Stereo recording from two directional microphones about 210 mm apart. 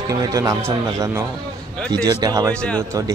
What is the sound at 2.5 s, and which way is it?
Speech, 5° left (ahead or behind).